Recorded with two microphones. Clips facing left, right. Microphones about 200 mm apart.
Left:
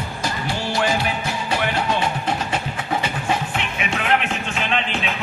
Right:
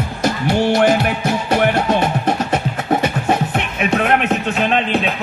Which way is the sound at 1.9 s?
40° right (ahead or behind).